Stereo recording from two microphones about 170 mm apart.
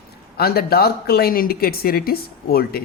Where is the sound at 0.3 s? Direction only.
65° left (ahead or behind).